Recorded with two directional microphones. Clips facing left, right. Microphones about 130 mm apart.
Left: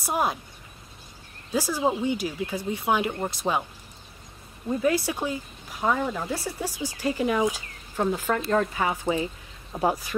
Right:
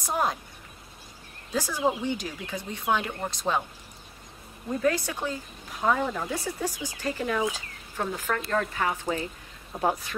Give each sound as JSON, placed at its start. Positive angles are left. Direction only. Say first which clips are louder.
{"t": 0.0, "sound": "speech", "louder": "left 1 dB", "side_deg": 10}
{"t": 1.5, "sound": "speech", "louder": "left 2 dB", "side_deg": 10}
{"t": 4.6, "sound": "speech", "louder": "left 2 dB", "side_deg": 10}
{"t": 5.8, "sound": "speech", "louder": "even", "side_deg": 0}